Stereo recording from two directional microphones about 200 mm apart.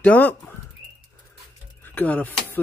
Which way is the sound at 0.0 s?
10° left (ahead or behind).